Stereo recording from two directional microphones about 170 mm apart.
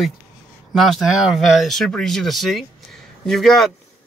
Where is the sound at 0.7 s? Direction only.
Centre (ahead or behind).